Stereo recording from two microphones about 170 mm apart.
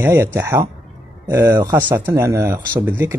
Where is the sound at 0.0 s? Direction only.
15° right (ahead or behind).